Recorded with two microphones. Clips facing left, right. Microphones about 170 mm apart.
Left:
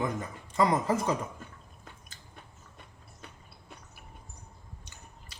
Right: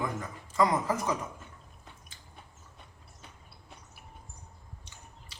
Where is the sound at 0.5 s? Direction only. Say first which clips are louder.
Left 1 dB; 30° left (ahead or behind).